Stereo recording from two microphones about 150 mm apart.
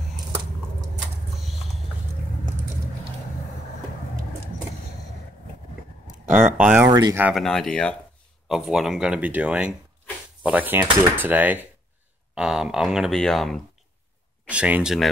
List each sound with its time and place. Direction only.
6.3 s speech: 10° right (ahead or behind)
6.9 s speech: 30° right (ahead or behind)
7.3 s speech: 5° left (ahead or behind)
14.5 s speech: 10° right (ahead or behind)